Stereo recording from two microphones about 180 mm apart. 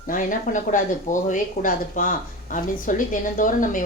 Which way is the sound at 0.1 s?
45° left (ahead or behind).